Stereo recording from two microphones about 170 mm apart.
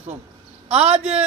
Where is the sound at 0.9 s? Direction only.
35° right (ahead or behind).